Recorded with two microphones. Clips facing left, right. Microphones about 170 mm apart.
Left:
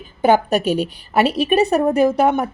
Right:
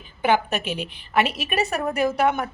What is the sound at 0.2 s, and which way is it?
A woman's voice, 40° left (ahead or behind).